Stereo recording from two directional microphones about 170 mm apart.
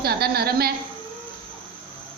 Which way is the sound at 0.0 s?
65° right (ahead or behind).